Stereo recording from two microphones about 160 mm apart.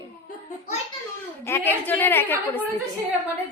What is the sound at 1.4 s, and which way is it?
Speech, 15° left (ahead or behind).